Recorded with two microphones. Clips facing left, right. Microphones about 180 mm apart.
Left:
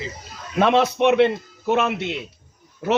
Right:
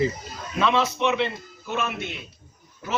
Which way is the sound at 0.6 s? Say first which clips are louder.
Left 5 dB; 60° left (ahead or behind).